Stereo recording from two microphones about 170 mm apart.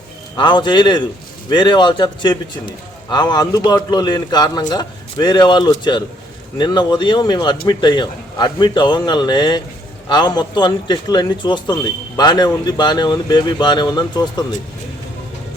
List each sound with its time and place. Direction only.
0.3 s speech: 30° left (ahead or behind)